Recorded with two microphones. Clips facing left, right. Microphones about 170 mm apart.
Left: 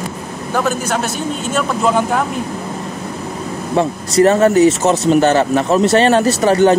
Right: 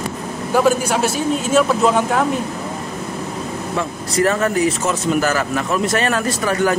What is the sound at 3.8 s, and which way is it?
Speech, 30° left (ahead or behind).